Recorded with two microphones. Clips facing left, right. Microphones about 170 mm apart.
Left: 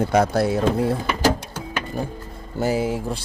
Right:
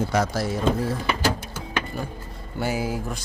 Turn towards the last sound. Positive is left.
turn(degrees=30)  # may be behind; listen again after turning